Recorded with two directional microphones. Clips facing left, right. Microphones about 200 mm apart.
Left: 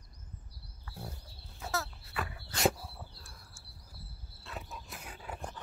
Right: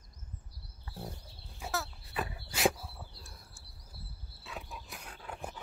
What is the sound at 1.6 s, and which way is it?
Dog, 10° right (ahead or behind).